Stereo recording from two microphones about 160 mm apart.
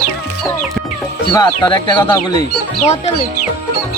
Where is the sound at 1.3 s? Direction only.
25° left (ahead or behind).